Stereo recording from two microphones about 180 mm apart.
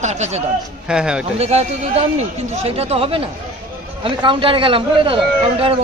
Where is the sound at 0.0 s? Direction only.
40° right (ahead or behind).